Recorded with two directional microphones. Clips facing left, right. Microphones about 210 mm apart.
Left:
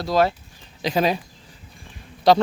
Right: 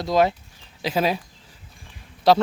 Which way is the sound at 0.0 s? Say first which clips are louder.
Even; 20° right (ahead or behind).